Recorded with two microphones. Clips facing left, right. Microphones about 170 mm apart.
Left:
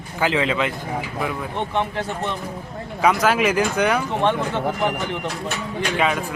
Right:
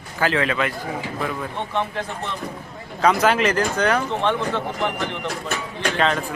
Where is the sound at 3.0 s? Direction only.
5° left (ahead or behind).